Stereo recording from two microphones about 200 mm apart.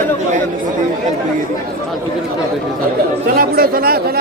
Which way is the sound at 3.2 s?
50° right (ahead or behind).